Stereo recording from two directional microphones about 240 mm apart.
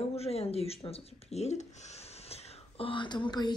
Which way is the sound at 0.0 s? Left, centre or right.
Left.